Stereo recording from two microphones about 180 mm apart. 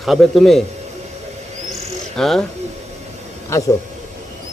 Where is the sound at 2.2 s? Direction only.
Centre (ahead or behind).